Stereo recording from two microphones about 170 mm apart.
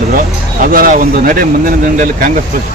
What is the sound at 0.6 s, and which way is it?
Speech, 55° right (ahead or behind).